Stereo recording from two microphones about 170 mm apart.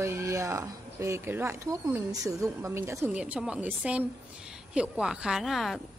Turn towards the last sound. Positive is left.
turn(degrees=0)  # may be behind; listen again after turning